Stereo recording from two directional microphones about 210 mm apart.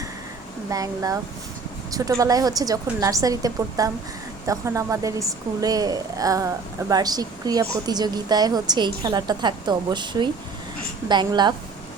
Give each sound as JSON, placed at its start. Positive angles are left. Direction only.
{"t": 0.7, "sound": "a woman's voice", "side_deg": -15}